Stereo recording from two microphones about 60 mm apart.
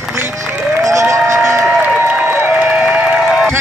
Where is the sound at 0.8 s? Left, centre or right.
Right.